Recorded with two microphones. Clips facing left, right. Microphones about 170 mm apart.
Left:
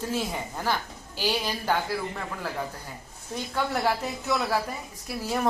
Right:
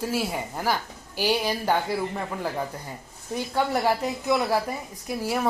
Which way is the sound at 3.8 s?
15° right (ahead or behind).